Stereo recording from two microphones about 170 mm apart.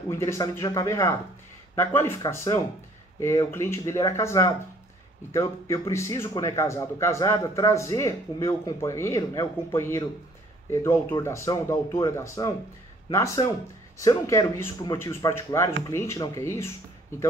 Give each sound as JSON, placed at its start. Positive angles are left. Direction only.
{"t": 0.1, "sound": "speech", "side_deg": 15}